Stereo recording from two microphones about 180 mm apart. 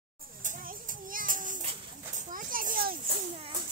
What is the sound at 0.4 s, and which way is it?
Children playing, 45° right (ahead or behind).